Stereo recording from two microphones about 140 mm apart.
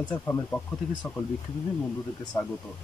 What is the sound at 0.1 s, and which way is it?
Speech, 10° left (ahead or behind).